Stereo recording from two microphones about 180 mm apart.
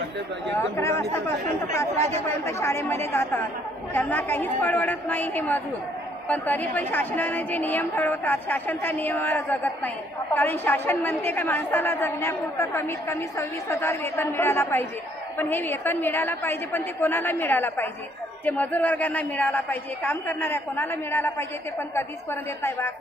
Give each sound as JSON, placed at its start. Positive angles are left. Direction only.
{"t": 0.8, "sound": "a woman's voice", "side_deg": 15}